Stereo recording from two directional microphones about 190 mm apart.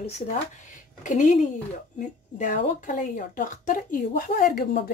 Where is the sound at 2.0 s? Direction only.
40° left (ahead or behind).